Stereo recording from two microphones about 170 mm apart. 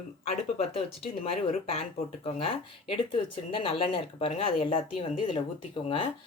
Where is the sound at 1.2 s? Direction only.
35° left (ahead or behind).